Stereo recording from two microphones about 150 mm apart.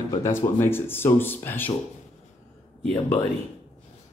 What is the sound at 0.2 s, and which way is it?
Speech, 15° left (ahead or behind).